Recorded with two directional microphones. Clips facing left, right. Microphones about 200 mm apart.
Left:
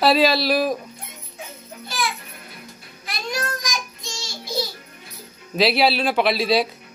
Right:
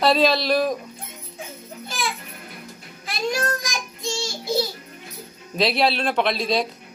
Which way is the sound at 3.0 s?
30° right (ahead or behind).